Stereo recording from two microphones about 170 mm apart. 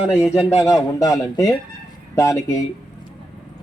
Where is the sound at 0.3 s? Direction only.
20° left (ahead or behind).